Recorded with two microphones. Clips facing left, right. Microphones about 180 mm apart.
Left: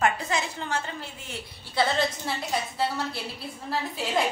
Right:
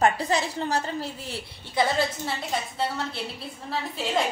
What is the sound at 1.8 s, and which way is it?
Speech, 15° right (ahead or behind).